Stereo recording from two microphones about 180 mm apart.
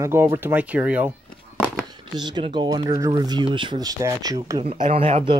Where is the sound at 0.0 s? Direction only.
15° right (ahead or behind).